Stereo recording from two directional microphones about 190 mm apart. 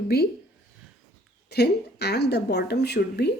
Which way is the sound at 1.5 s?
60° left (ahead or behind).